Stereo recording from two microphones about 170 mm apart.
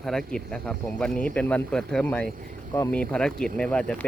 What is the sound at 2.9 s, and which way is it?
Speech, 5° left (ahead or behind).